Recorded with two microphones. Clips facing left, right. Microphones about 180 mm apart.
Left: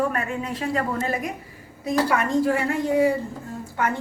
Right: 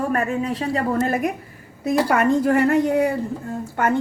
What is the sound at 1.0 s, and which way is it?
A woman's voice, 50° right (ahead or behind).